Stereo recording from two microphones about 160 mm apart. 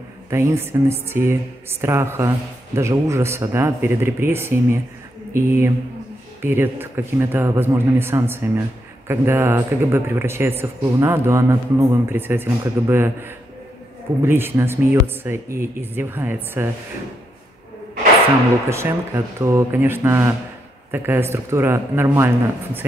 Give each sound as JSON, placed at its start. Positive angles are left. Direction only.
{"t": 0.3, "sound": "speech", "side_deg": -15}
{"t": 18.7, "sound": "speech", "side_deg": -15}